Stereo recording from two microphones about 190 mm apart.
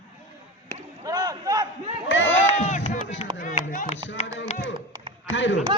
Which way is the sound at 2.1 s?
80° left.